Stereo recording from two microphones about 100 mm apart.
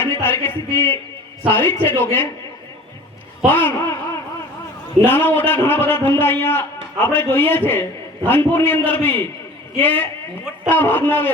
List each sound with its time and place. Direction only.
0.0 s a sound: 25° left (ahead or behind)
1.5 s a man's voice: 20° left (ahead or behind)
3.5 s a man's voice: 20° left (ahead or behind)
5.0 s a man's voice: 20° left (ahead or behind)